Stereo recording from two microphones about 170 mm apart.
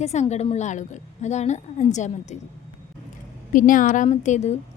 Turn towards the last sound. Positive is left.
turn(degrees=45)  # may be behind; listen again after turning